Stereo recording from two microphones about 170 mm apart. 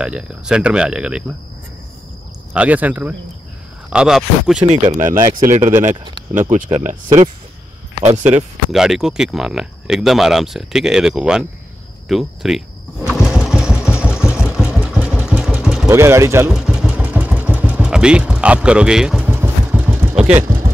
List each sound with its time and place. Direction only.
0.0 s speech: 5° right (ahead or behind)
2.5 s speech: 10° right (ahead or behind)
4.6 s speech: 35° right (ahead or behind)
5.0 s speech: 55° right (ahead or behind)
8.0 s speech: 40° right (ahead or behind)
8.3 s speech: 5° right (ahead or behind)
12.1 s lawn mower: centre (ahead or behind)
13.8 s vehicle: 5° right (ahead or behind)
15.9 s speech: 15° right (ahead or behind)
16.5 s vehicle: 5° right (ahead or behind)
20.3 s a sound: 15° right (ahead or behind)